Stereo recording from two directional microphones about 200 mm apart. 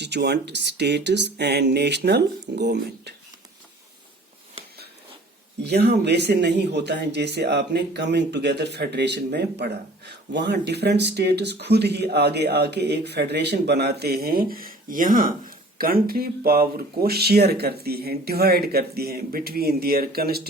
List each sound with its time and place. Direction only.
0.0 s speech: 60° right (ahead or behind)
5.6 s speech: 55° right (ahead or behind)